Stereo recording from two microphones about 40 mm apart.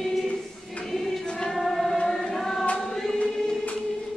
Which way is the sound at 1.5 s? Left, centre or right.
Centre.